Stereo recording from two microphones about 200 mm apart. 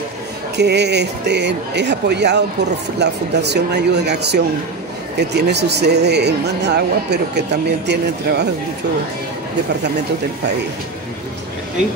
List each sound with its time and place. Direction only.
0.6 s speech: 55° right (ahead or behind)